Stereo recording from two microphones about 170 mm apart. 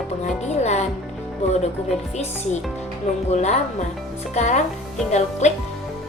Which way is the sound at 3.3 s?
40° left (ahead or behind).